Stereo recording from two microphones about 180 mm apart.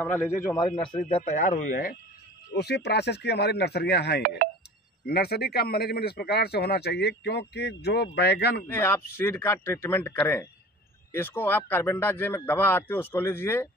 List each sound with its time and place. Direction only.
0.0 s speech: 10° left (ahead or behind)
0.9 s speech: 35° left (ahead or behind)
2.5 s speech: 65° left (ahead or behind)
8.6 s speech: 15° left (ahead or behind)